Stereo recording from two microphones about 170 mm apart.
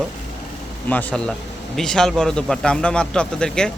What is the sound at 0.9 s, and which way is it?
Speech, 10° left (ahead or behind).